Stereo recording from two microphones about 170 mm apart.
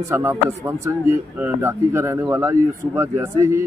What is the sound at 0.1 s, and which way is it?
Speech, 15° right (ahead or behind).